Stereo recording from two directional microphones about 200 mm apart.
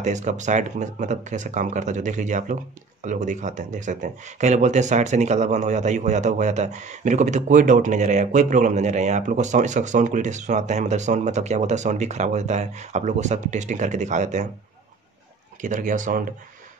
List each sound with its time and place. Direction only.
0.0 s speech: 35° right (ahead or behind)
15.6 s speech: 40° right (ahead or behind)